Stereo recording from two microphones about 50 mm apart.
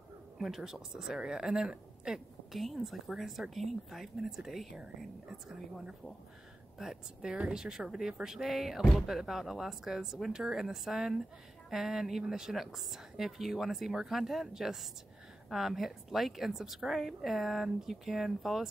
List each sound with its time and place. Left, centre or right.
0.4 s a woman's voice: centre
2.5 s a woman's voice: centre
6.8 s a woman's voice: centre